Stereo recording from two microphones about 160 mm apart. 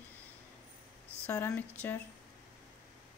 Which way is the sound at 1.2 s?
15° left (ahead or behind).